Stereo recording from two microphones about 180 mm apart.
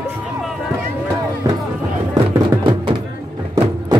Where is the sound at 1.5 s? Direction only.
20° right (ahead or behind).